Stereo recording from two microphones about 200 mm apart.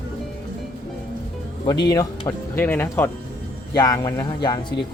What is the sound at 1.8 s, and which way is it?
Speech, 20° left (ahead or behind).